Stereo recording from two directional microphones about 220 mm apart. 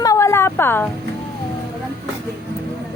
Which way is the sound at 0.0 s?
15° left (ahead or behind).